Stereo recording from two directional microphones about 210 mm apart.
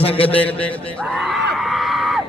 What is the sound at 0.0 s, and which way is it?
Speech, 25° left (ahead or behind).